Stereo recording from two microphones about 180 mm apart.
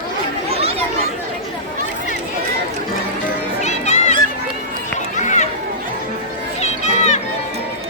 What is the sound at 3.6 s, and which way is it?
Music, 40° left (ahead or behind).